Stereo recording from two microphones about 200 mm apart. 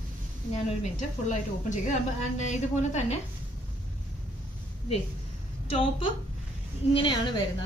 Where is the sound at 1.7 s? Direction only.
35° left (ahead or behind).